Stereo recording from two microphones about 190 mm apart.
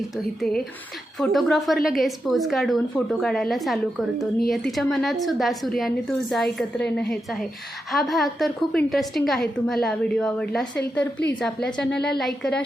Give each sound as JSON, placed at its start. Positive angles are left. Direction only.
{"t": 1.2, "sound": "a woman's voice", "side_deg": 0}